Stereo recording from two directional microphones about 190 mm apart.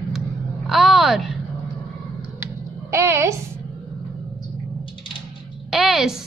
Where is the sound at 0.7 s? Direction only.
Centre (ahead or behind).